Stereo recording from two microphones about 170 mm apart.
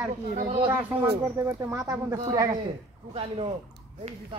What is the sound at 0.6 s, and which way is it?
Speech, 10° right (ahead or behind).